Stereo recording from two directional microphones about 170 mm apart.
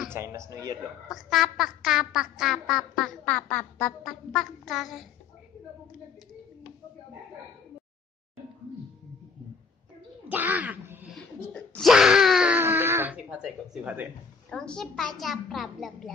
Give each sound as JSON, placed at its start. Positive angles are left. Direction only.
{"t": 0.1, "sound": "a man's voice", "side_deg": -15}
{"t": 1.0, "sound": "quack", "side_deg": 0}
{"t": 10.2, "sound": "a sound", "side_deg": -10}
{"t": 11.1, "sound": "wail", "side_deg": 5}
{"t": 14.5, "sound": "quack", "side_deg": 5}